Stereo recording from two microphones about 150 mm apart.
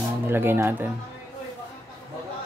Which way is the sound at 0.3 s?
15° right (ahead or behind).